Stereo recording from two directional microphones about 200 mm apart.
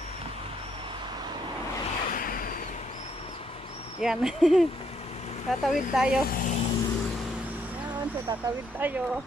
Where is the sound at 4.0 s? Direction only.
Centre (ahead or behind).